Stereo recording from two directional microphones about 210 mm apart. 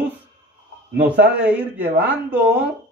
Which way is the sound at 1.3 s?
5° right (ahead or behind).